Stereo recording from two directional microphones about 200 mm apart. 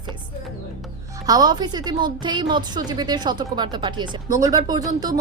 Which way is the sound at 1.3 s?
20° right (ahead or behind).